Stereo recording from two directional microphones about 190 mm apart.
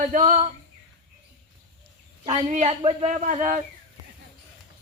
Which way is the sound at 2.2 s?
35° right (ahead or behind).